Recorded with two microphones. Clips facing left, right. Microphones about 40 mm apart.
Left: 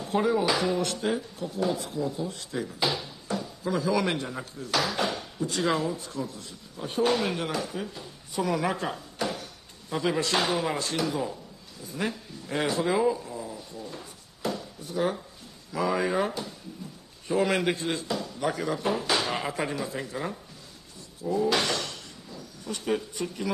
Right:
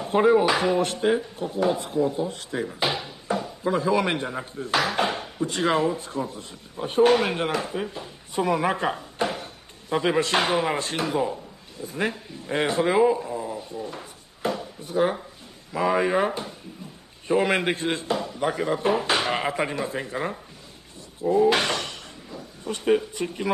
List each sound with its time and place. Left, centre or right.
0.0 s speech: right
11.8 s a sound: right
15.7 s speech: right